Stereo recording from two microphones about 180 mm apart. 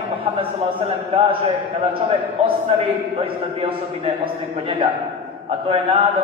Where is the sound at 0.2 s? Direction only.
30° right (ahead or behind).